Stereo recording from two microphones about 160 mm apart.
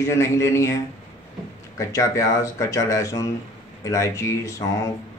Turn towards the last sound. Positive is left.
turn(degrees=20)  # may be behind; listen again after turning